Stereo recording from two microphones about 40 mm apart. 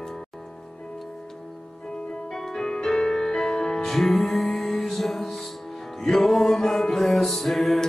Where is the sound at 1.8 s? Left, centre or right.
Centre.